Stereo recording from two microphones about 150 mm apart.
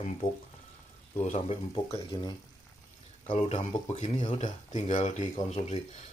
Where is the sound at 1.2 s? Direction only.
50° left (ahead or behind).